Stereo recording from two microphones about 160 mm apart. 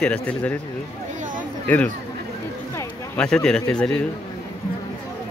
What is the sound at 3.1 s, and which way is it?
Speech, 5° left (ahead or behind).